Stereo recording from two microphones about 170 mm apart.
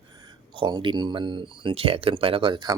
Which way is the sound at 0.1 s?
25° right (ahead or behind).